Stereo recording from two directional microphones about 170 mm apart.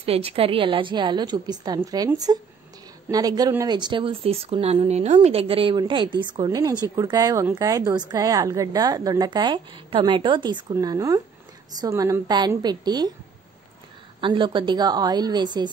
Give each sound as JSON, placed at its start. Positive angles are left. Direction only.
{"t": 0.0, "sound": "speech", "side_deg": -35}
{"t": 14.2, "sound": "speech", "side_deg": -30}